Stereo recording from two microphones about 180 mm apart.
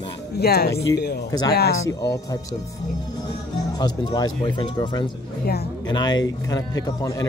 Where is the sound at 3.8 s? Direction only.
20° left (ahead or behind).